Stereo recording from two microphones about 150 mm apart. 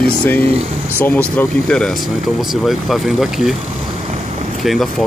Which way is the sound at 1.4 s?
5° left (ahead or behind).